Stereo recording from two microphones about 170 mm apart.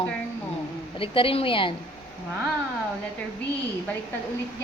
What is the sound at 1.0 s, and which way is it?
Speech, 30° left (ahead or behind).